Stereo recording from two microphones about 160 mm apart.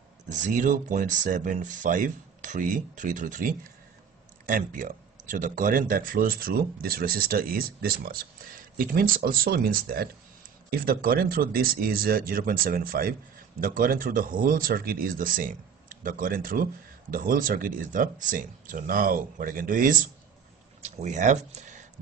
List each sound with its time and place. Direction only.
0.3 s speech: 50° right (ahead or behind)